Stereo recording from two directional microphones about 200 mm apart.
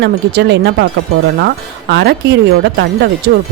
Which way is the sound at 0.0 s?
60° right (ahead or behind).